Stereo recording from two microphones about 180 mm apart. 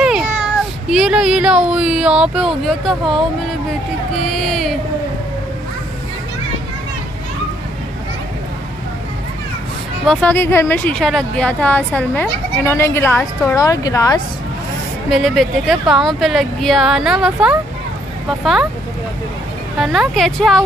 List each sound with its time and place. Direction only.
0.0 s speech: 5° right (ahead or behind)
4.2 s speech: centre (ahead or behind)
10.0 s speech: 10° left (ahead or behind)
15.0 s speech: centre (ahead or behind)
19.8 s speech: centre (ahead or behind)